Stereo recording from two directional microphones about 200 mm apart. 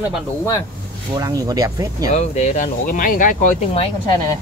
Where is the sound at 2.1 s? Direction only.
35° left (ahead or behind).